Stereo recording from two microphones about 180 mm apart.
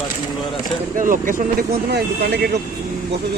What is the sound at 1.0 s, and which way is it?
Speech, 50° right (ahead or behind).